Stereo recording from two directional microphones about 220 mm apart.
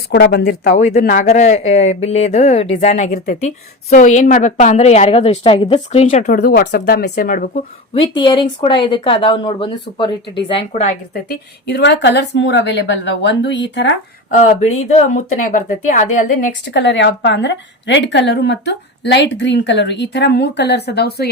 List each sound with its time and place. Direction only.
0.1 s speech: 50° left (ahead or behind)
8.1 s speech: 20° left (ahead or behind)
11.1 s a woman's voice: 45° left (ahead or behind)
14.3 s speech: 30° left (ahead or behind)
16.6 s a woman's voice: 50° left (ahead or behind)